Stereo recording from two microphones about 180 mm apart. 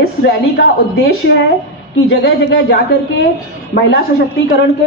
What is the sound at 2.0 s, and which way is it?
Speech, 85° left.